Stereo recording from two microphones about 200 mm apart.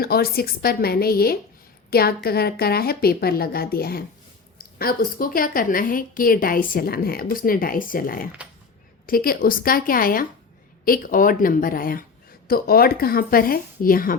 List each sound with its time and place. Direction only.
0.0 s a woman's voice: 50° left (ahead or behind)